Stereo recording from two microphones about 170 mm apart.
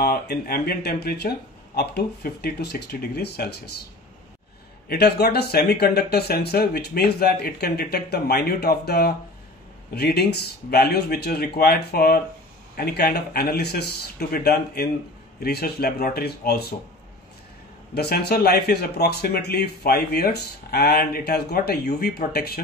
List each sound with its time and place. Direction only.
0.0 s a man's voice: 65° left (ahead or behind)
4.8 s a man's voice: 70° left (ahead or behind)
17.9 s speech: 65° left (ahead or behind)